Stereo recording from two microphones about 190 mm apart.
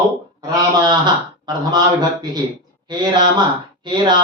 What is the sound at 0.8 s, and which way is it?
Speech, 25° right (ahead or behind).